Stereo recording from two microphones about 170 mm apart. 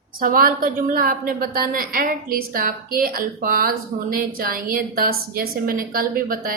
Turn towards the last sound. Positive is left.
turn(degrees=-55)  # may be behind; listen again after turning